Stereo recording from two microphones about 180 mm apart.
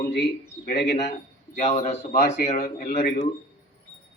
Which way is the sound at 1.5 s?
45° left (ahead or behind).